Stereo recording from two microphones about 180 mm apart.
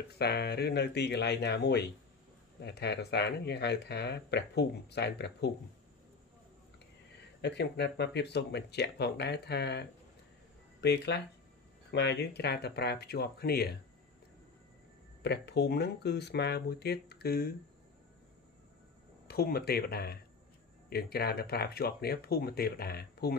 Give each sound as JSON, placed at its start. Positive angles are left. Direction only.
{"t": 0.2, "sound": "speech", "side_deg": 65}
{"t": 7.4, "sound": "speech", "side_deg": 70}
{"t": 15.2, "sound": "speech", "side_deg": 65}
{"t": 19.2, "sound": "speech", "side_deg": 60}